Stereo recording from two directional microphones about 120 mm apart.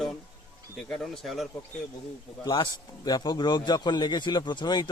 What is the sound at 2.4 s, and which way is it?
A man's voice, 35° left (ahead or behind).